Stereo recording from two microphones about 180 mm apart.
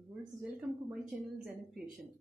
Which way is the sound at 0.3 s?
5° right (ahead or behind).